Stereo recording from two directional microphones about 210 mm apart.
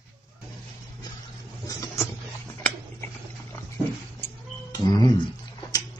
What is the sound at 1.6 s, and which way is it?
Vehicle, 15° left (ahead or behind).